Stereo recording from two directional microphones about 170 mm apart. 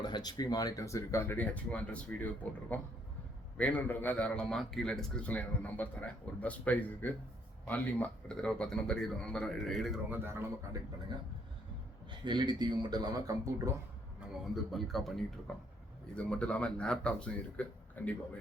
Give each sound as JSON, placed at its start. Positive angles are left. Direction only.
{"t": 0.0, "sound": "a man's voice", "side_deg": 25}
{"t": 10.1, "sound": "speech", "side_deg": -15}
{"t": 12.2, "sound": "a man's voice", "side_deg": -25}
{"t": 14.5, "sound": "a man's voice", "side_deg": 0}